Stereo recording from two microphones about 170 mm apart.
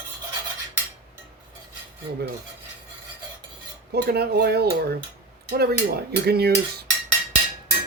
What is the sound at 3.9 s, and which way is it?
Speech, 70° right (ahead or behind).